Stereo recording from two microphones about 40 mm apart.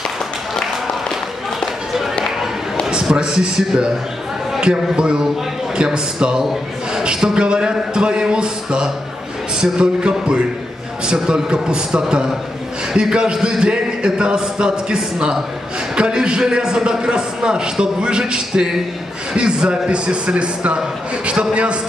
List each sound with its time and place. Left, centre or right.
2.9 s a man's voice: right